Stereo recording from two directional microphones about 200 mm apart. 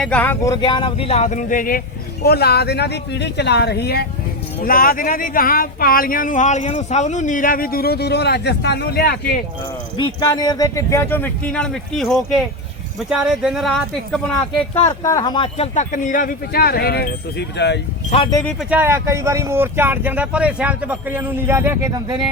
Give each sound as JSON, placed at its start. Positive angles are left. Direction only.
{"t": 0.0, "sound": "speech", "side_deg": 5}
{"t": 10.0, "sound": "speech", "side_deg": 20}
{"t": 14.8, "sound": "speech", "side_deg": 15}
{"t": 18.7, "sound": "speech", "side_deg": -10}